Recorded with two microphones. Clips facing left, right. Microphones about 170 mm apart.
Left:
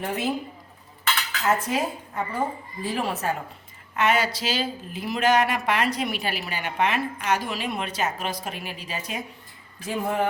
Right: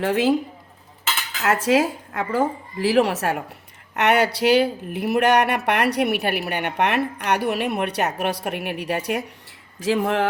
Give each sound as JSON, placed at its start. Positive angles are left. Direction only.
{"t": 0.0, "sound": "a woman's voice", "side_deg": -90}
{"t": 1.5, "sound": "a woman's voice", "side_deg": -90}
{"t": 3.9, "sound": "speech", "side_deg": -70}
{"t": 9.8, "sound": "a woman's voice", "side_deg": -90}